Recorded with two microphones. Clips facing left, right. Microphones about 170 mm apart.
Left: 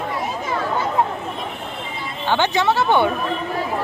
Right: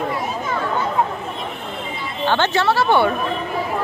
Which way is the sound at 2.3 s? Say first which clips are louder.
Even; 15° left (ahead or behind).